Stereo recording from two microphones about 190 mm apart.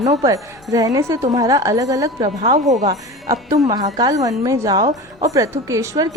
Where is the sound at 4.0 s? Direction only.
20° right (ahead or behind).